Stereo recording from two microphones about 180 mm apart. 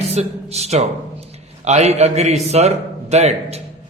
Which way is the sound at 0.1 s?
35° right (ahead or behind).